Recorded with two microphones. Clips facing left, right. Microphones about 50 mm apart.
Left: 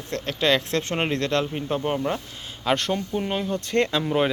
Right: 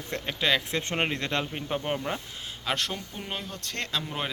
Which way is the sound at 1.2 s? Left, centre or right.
Centre.